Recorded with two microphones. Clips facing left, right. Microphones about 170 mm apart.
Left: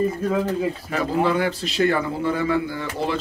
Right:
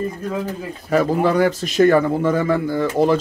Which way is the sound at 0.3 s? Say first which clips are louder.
Left 3 dB; 5° left (ahead or behind).